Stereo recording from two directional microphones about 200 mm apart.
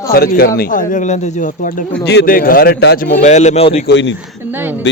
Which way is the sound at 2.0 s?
55° left (ahead or behind).